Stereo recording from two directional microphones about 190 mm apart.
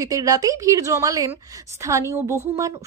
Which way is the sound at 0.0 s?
15° right (ahead or behind).